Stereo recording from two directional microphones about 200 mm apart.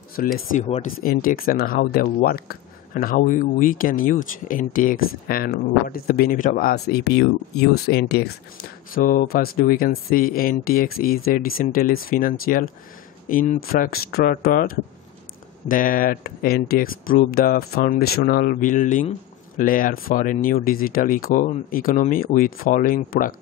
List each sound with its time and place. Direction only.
0.2 s speech: 45° left (ahead or behind)
0.6 s speech: 30° left (ahead or behind)
1.0 s speech: 45° left (ahead or behind)